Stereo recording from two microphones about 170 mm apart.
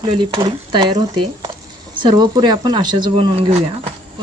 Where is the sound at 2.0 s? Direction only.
25° right (ahead or behind).